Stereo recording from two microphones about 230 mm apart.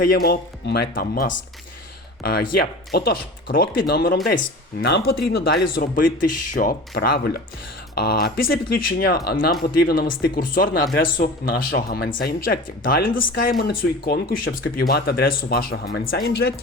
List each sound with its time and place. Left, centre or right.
0.1 s speech: left
6.1 s speech: left
6.6 s speech: left